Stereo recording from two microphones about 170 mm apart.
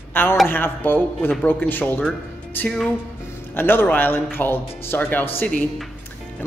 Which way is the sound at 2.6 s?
5° left (ahead or behind).